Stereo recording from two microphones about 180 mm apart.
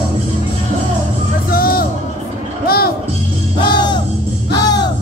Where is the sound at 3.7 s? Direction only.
25° left (ahead or behind).